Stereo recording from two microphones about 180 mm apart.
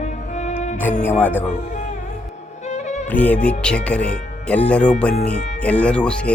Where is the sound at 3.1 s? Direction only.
10° left (ahead or behind).